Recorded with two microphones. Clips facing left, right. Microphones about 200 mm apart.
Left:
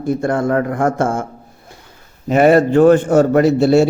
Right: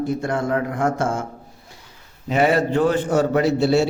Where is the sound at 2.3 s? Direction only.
50° left (ahead or behind).